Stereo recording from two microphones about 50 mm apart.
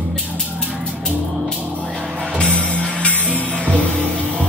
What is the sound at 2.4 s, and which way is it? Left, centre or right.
Music, right.